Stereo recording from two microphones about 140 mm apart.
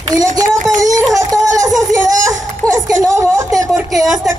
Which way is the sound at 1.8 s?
25° right (ahead or behind).